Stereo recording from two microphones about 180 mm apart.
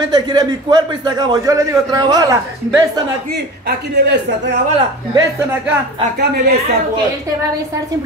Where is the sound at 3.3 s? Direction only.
70° right (ahead or behind).